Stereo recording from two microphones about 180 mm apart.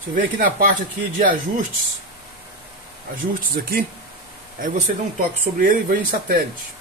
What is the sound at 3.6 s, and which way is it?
Speech, 60° right (ahead or behind).